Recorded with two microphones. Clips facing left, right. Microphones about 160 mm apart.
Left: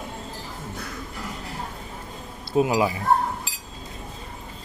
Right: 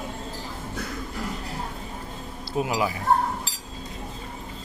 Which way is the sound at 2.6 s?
25° left (ahead or behind).